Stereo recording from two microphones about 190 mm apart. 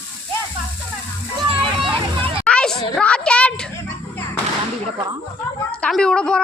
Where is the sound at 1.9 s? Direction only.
25° right (ahead or behind).